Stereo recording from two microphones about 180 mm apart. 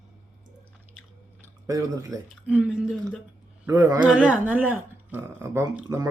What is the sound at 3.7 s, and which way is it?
Speech, 20° right (ahead or behind).